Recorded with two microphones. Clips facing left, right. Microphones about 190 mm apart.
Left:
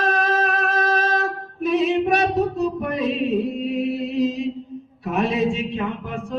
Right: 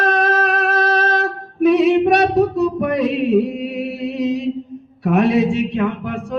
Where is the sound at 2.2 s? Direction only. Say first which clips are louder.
Right 5 dB; 70° right (ahead or behind).